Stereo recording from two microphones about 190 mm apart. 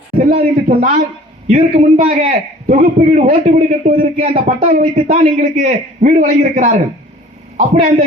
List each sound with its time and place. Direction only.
0.3 s a man's voice: 45° right (ahead or behind)